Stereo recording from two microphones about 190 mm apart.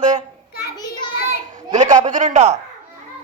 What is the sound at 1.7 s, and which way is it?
Speech, 40° right (ahead or behind).